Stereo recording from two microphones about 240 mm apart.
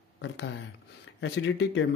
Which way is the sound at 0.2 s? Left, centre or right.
Left.